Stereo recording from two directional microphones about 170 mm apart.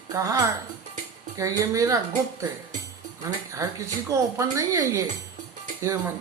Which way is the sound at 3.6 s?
20° right (ahead or behind).